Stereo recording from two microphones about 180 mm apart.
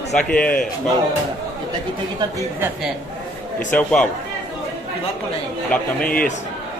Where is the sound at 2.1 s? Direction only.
20° right (ahead or behind).